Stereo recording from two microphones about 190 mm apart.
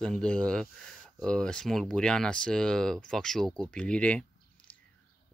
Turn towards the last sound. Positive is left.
turn(degrees=5)  # may be behind; listen again after turning